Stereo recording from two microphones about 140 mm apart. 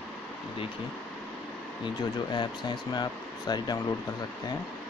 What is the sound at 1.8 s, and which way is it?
Speech, 35° left (ahead or behind).